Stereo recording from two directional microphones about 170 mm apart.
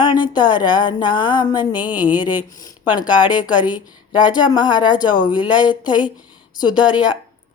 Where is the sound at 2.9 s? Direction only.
25° left (ahead or behind).